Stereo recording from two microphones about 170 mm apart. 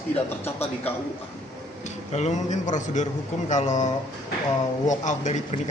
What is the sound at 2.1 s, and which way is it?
Speech, 45° left (ahead or behind).